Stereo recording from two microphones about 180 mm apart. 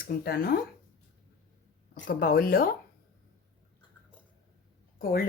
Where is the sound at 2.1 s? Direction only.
55° left (ahead or behind).